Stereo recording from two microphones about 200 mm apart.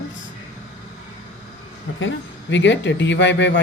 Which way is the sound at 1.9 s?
65° left (ahead or behind).